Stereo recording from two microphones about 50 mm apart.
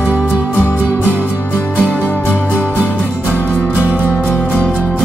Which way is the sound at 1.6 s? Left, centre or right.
Left.